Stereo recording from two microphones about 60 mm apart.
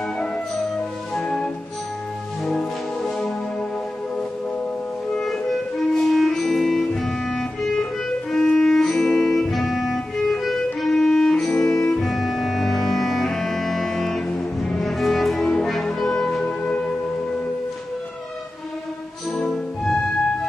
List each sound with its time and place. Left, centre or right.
1.2 s music: centre
5.1 s music: centre
16.6 s music: left
19.4 s music: centre